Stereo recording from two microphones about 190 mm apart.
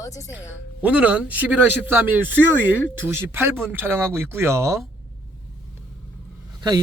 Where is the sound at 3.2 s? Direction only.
10° right (ahead or behind).